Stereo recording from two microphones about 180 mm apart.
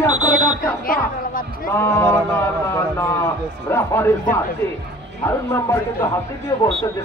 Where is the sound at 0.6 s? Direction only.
50° left (ahead or behind).